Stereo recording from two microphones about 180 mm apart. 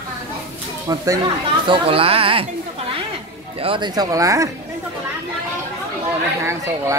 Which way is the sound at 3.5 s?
30° right (ahead or behind).